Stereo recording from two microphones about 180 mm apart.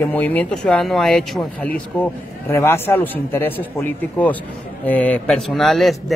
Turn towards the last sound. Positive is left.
turn(degrees=0)  # may be behind; listen again after turning